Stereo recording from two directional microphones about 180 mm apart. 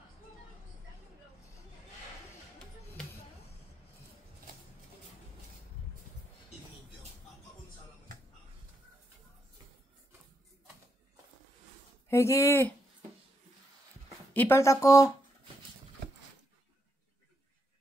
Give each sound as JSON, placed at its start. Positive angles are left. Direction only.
{"t": 12.1, "sound": "speech", "side_deg": 15}
{"t": 14.3, "sound": "speech", "side_deg": 10}